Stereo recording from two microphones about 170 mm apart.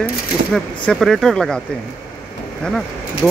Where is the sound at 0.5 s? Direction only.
Centre (ahead or behind).